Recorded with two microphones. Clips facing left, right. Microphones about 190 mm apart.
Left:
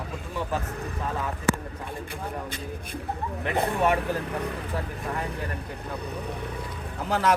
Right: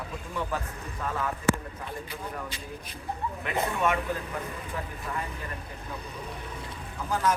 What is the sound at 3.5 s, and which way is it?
Speech, 35° left (ahead or behind).